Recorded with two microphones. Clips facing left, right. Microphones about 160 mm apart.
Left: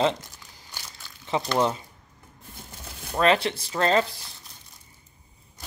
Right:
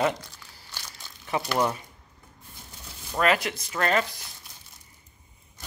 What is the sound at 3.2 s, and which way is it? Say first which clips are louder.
Speech: left 3 dB; 30° left (ahead or behind).